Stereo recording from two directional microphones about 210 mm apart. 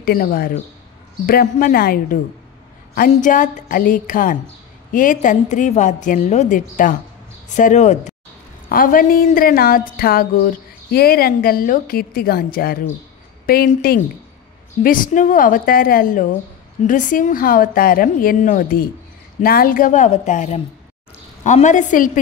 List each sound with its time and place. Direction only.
0.0 s a woman's voice: 45° left (ahead or behind)